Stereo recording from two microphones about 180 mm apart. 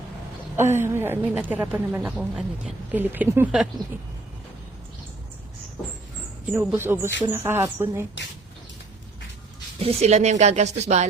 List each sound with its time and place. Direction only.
0.5 s a woman's voice: 15° right (ahead or behind)
6.5 s a woman's voice: 10° right (ahead or behind)
9.8 s speech: 35° right (ahead or behind)